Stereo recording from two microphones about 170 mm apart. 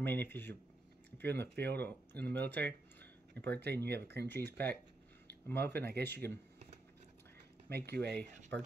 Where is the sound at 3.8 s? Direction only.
75° right (ahead or behind).